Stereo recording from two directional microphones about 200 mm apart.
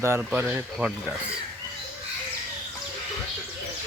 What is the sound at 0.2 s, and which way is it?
Speech, 5° right (ahead or behind).